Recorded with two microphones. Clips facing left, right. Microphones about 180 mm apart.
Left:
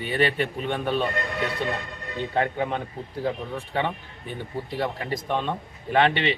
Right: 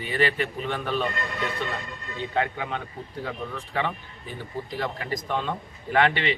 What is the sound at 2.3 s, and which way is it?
Speech, 35° left (ahead or behind).